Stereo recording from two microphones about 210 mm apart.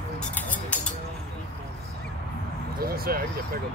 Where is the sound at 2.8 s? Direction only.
45° right (ahead or behind).